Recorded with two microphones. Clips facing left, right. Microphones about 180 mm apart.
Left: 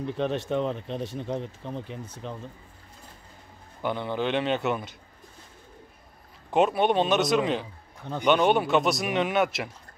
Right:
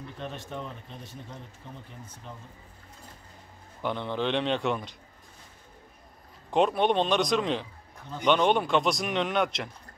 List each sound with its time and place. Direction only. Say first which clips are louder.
0.2 s speech: left 11 dB; 80° left
3.8 s speech: left 2 dB; 5° left (ahead or behind)
6.5 s speech: left 2 dB; 5° left (ahead or behind)